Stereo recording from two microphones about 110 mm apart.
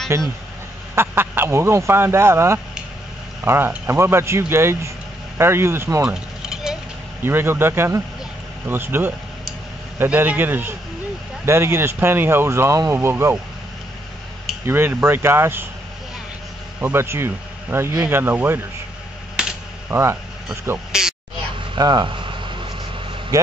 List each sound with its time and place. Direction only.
0.1 s speech: 25° right (ahead or behind)
6.0 s a sound: 5° right (ahead or behind)
7.2 s speech: 20° right (ahead or behind)
14.7 s speech: 20° right (ahead or behind)
16.8 s speech: 25° right (ahead or behind)
19.4 s a sound: 5° right (ahead or behind)
19.9 s speech: 25° right (ahead or behind)
20.9 s quack: 5° right (ahead or behind)
21.5 s a sound: 40° right (ahead or behind)
23.3 s speech: 30° right (ahead or behind)